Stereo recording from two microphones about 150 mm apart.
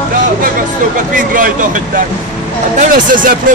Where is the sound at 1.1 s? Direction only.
65° right (ahead or behind).